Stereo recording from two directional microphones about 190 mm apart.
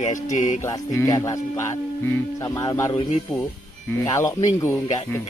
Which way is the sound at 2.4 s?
20° left (ahead or behind).